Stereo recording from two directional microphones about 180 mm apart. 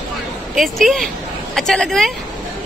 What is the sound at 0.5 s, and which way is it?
A woman's voice, centre (ahead or behind).